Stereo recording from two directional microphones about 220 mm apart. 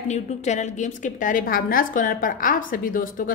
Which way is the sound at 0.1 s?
30° left (ahead or behind).